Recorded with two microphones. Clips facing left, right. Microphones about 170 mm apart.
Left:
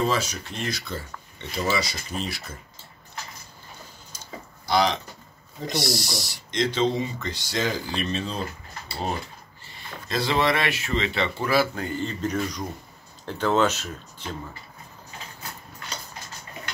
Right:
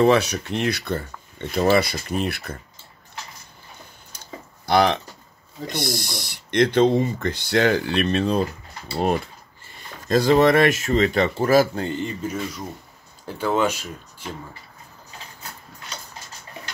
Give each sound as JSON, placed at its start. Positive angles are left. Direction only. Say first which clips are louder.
{"t": 0.0, "sound": "speech", "louder": "right 8 dB", "side_deg": -65}
{"t": 4.6, "sound": "speech", "louder": "right 4 dB", "side_deg": -60}
{"t": 9.7, "sound": "speech", "louder": "right 10 dB", "side_deg": -45}
{"t": 11.8, "sound": "speech", "louder": "right 2 dB", "side_deg": -20}